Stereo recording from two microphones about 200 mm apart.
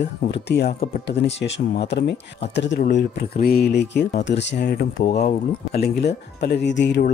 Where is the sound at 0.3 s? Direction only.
55° left (ahead or behind).